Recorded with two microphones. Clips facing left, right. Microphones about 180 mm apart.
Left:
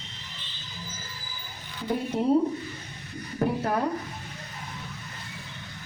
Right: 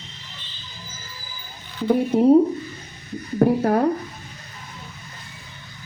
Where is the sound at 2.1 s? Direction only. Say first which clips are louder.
Right 11 dB; 55° right (ahead or behind).